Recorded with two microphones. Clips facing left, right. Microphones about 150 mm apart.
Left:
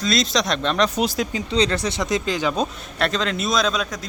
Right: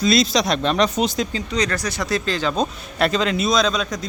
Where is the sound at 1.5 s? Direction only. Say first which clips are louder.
Left 2 dB; 25° left (ahead or behind); by 2.7 s 10° left (ahead or behind).